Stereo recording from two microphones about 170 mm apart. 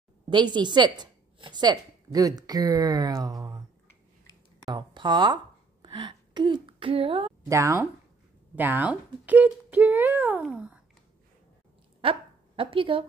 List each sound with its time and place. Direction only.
0.3 s a woman's voice: 25° right (ahead or behind)
4.6 s a woman's voice: 25° right (ahead or behind)
7.4 s speech: 20° right (ahead or behind)
12.0 s speech: 30° right (ahead or behind)